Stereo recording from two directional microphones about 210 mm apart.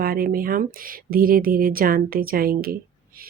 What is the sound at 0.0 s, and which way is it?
Speech, 45° right (ahead or behind).